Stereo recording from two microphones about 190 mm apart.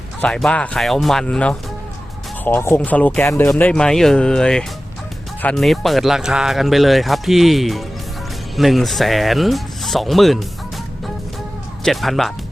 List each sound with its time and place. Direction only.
0.2 s speech: 5° left (ahead or behind)
11.8 s speech: centre (ahead or behind)